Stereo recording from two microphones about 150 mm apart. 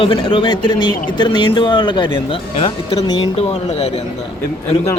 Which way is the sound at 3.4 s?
45° left (ahead or behind).